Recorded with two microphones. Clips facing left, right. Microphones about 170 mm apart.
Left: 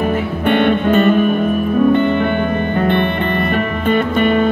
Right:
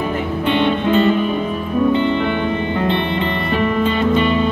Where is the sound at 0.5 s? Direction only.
55° left (ahead or behind).